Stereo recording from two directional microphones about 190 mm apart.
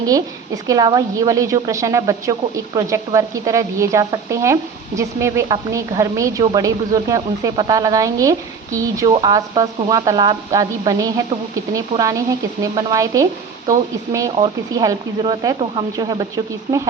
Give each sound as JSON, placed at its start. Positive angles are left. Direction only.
{"t": 0.0, "sound": "a woman's voice", "side_deg": -20}